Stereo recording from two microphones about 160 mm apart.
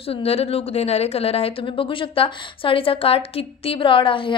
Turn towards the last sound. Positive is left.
turn(degrees=35)  # may be behind; listen again after turning